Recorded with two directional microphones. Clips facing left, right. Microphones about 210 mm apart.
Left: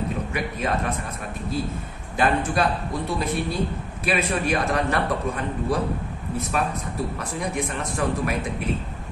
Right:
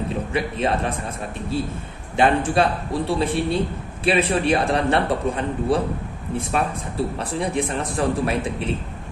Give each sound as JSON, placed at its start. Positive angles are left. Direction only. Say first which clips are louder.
{"t": 0.3, "sound": "a man's voice", "louder": "right 4 dB", "side_deg": -30}
{"t": 2.1, "sound": "a man's voice", "louder": "right 4 dB", "side_deg": -25}